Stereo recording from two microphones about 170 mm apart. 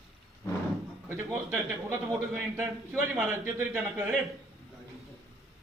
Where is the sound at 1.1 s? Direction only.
15° right (ahead or behind).